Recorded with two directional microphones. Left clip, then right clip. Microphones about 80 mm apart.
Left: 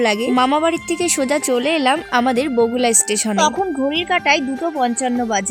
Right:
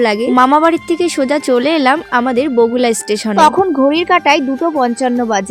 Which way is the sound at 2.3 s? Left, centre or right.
Right.